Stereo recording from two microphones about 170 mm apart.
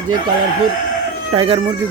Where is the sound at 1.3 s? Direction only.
35° right (ahead or behind).